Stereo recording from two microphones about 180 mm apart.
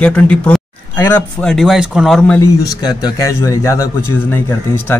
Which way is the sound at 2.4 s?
20° left (ahead or behind).